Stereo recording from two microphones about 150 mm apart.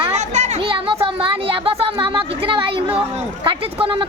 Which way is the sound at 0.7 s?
40° right (ahead or behind).